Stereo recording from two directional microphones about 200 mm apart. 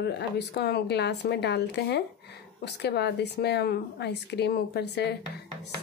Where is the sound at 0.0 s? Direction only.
55° left (ahead or behind).